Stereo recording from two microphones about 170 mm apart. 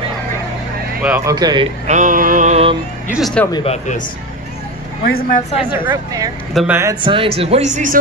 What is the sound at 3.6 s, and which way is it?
Speech, 45° left (ahead or behind).